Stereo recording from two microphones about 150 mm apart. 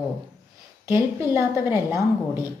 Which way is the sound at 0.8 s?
20° right (ahead or behind).